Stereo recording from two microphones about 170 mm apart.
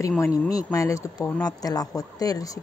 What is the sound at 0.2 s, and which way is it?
Speech, 20° left (ahead or behind).